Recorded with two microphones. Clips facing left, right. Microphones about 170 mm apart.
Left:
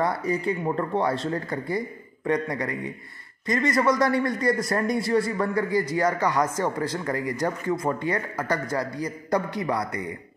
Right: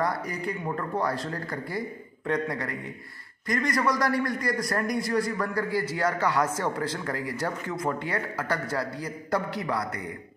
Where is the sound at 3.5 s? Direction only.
25° left (ahead or behind).